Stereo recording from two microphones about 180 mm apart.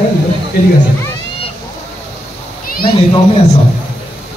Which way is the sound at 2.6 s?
55° left (ahead or behind).